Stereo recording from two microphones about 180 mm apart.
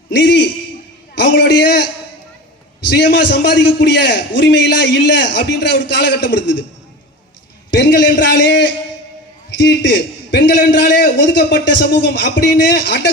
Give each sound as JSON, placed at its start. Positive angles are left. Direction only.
{"t": 0.1, "sound": "a sound", "side_deg": 80}
{"t": 1.1, "sound": "a man's voice", "side_deg": 70}
{"t": 2.9, "sound": "a man's voice", "side_deg": 75}
{"t": 7.7, "sound": "a man's voice", "side_deg": 75}